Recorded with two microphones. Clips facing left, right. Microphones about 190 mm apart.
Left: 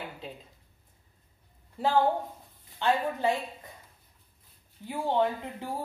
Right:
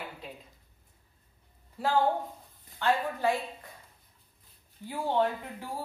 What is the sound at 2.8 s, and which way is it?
Speech, 20° left (ahead or behind).